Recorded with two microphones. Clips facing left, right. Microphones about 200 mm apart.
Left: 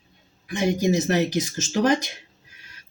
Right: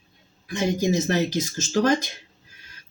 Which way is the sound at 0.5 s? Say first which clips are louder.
Left 1 dB; 15° left (ahead or behind).